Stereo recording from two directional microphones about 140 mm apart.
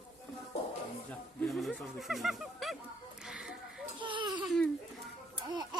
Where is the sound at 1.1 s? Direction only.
5° left (ahead or behind).